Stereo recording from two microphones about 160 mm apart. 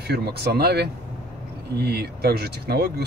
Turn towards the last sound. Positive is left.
turn(degrees=-85)